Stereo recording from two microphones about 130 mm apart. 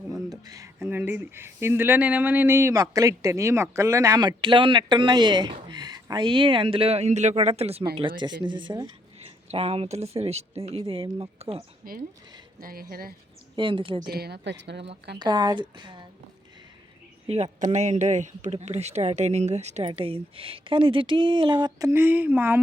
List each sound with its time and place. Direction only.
0.1 s speech: 30° right (ahead or behind); by 8.1 s 45° right (ahead or behind)
8.2 s speech: 35° right (ahead or behind)
9.1 s speech: 50° right (ahead or behind)
11.8 s speech: 90° right
13.6 s speech: 40° right (ahead or behind)
17.2 s speech: 55° right (ahead or behind)
19.9 s speech: 45° right (ahead or behind)
21.8 s speech: 20° right (ahead or behind)